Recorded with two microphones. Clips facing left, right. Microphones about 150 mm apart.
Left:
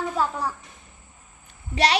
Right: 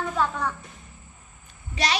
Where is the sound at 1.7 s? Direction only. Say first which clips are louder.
Left 5 dB; 65° left (ahead or behind).